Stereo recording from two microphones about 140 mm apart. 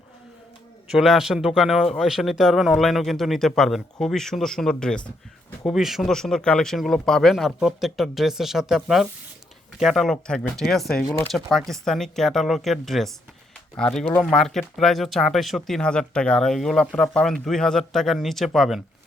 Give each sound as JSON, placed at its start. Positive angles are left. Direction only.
{"t": 0.9, "sound": "speech", "side_deg": -5}